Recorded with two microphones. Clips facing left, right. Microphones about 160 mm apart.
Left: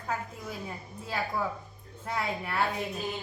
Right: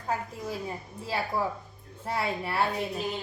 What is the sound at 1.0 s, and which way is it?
A woman's voice, 30° right (ahead or behind).